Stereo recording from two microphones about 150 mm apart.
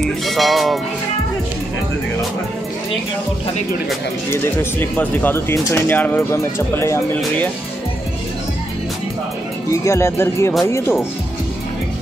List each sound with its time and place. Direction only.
0.0 s music: centre (ahead or behind)
4.3 s speech: 15° left (ahead or behind)
9.7 s speech: 20° left (ahead or behind)